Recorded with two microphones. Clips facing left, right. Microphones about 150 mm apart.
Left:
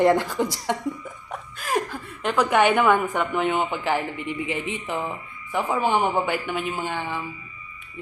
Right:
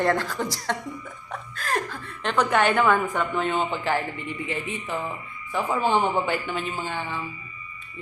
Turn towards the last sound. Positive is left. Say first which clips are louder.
# left 2 dB
turn(degrees=15)  # may be behind; listen again after turning